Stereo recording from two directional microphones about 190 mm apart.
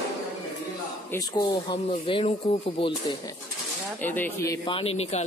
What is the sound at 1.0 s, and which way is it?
Speech, 20° left (ahead or behind).